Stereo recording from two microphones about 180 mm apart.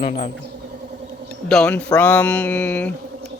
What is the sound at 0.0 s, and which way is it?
Speech, 35° left (ahead or behind).